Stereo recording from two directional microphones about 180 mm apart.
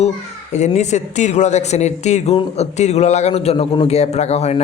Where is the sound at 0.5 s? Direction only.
40° left (ahead or behind).